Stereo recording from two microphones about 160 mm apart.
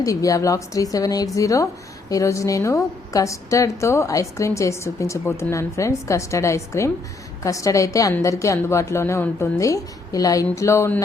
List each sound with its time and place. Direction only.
0.0 s a woman's voice: 20° left (ahead or behind)